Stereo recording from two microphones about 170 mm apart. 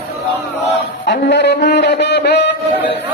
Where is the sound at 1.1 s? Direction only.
90° left.